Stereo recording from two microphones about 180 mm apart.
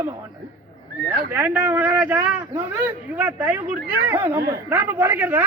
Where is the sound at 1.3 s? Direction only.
10° right (ahead or behind).